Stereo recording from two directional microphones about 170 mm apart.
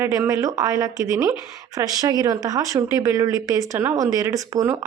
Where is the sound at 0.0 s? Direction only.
20° right (ahead or behind).